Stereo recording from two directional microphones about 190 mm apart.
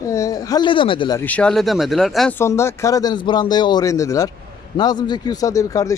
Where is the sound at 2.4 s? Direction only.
15° left (ahead or behind).